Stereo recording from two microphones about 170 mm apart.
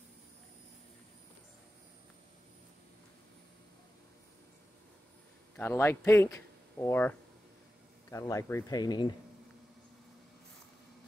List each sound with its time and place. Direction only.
5.6 s speech: 15° left (ahead or behind)